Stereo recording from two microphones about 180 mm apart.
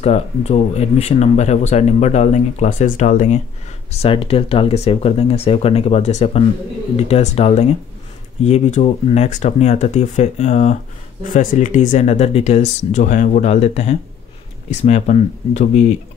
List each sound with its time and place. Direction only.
0.0 s speech: 35° left (ahead or behind)